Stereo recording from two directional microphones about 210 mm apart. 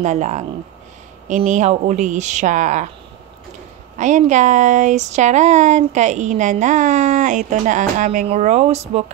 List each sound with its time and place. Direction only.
0.0 s speech: 35° right (ahead or behind)
4.0 s speech: 35° right (ahead or behind)